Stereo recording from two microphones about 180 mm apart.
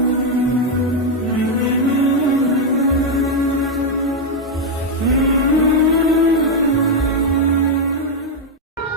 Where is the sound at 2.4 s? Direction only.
Centre (ahead or behind).